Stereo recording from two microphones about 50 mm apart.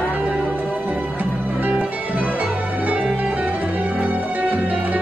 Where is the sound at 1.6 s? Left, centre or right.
Right.